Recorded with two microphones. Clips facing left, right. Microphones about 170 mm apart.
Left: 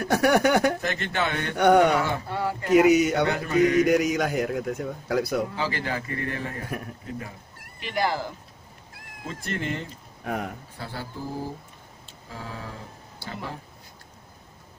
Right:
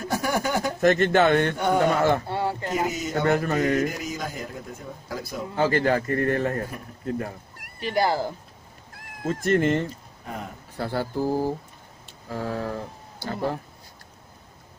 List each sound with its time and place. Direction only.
0.0 s speech: 70° left (ahead or behind)
0.7 s a man's voice: 45° right (ahead or behind)
1.6 s a man's voice: 70° left (ahead or behind)
2.2 s a sound: 25° right (ahead or behind)
2.7 s a man's voice: 75° left (ahead or behind)
3.3 s a man's voice: 45° right (ahead or behind)
3.8 s a man's voice: 75° left (ahead or behind)
5.6 s a man's voice: 50° right (ahead or behind)
7.8 s a man's voice: 35° right (ahead or behind)
10.8 s a man's voice: 45° right (ahead or behind)